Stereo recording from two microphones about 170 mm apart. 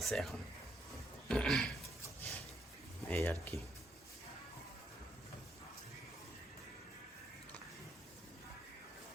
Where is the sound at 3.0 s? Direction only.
15° left (ahead or behind).